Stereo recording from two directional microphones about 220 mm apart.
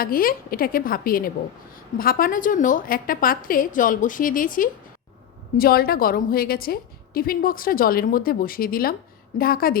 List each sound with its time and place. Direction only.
0.0 s a woman's voice: 40° left (ahead or behind)